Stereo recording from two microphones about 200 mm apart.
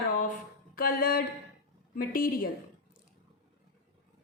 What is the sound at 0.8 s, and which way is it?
A woman's voice, 45° left (ahead or behind).